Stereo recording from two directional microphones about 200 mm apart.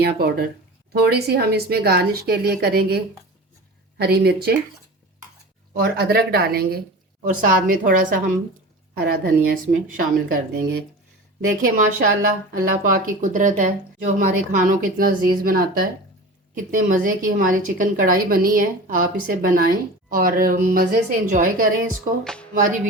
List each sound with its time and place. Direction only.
0.0 s a woman's voice: 50° right (ahead or behind)
5.7 s a woman's voice: 50° right (ahead or behind)
22.2 s music: 5° left (ahead or behind)